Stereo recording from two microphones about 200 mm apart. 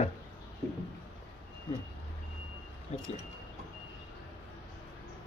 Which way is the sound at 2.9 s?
35° left (ahead or behind).